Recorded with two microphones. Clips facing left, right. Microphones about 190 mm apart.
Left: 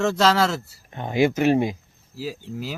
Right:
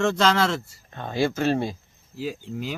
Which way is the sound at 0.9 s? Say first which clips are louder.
Left 4 dB; 15° left (ahead or behind).